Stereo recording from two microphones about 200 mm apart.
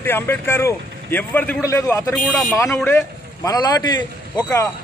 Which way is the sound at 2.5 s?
15° left (ahead or behind).